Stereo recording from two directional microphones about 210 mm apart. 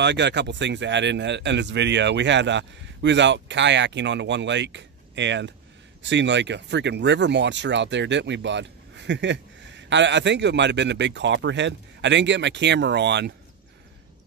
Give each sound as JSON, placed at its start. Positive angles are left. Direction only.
{"t": 0.0, "sound": "speech", "side_deg": -55}